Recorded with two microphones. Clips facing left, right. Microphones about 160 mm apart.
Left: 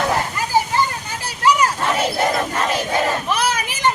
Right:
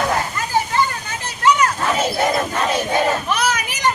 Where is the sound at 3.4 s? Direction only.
30° left (ahead or behind).